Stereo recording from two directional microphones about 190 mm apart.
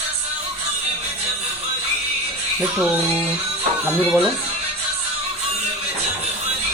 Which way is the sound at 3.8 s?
10° right (ahead or behind).